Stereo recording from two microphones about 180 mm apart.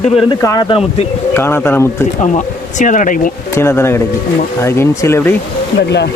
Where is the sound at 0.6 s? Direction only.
30° left (ahead or behind).